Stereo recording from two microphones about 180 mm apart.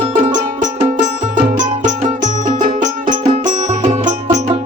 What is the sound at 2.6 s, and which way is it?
Music, 45° right (ahead or behind).